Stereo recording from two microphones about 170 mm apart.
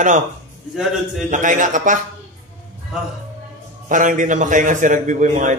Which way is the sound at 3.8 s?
50° right (ahead or behind).